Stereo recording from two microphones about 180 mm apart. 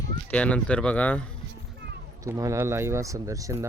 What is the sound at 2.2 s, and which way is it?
Speech, 15° right (ahead or behind).